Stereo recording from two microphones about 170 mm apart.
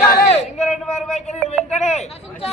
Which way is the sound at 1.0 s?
5° left (ahead or behind).